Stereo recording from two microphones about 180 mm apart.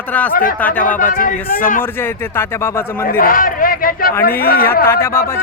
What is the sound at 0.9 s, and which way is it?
Speech, 50° left (ahead or behind).